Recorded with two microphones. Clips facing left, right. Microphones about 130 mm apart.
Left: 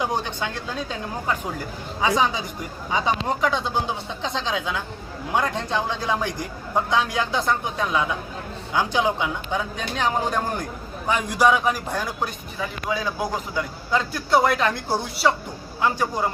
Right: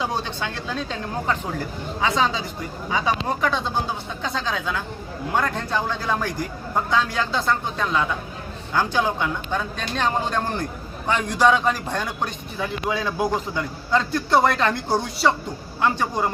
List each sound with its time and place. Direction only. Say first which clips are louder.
0.0 s a man's voice: left 1 dB; 15° left (ahead or behind)